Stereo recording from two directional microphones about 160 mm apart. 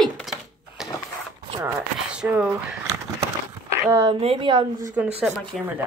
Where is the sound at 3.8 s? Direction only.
20° right (ahead or behind).